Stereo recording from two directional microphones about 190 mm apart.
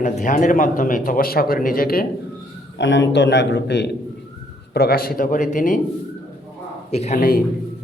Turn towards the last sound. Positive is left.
turn(degrees=50)  # may be behind; listen again after turning